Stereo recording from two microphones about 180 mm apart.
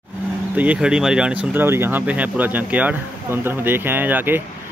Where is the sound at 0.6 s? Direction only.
5° right (ahead or behind).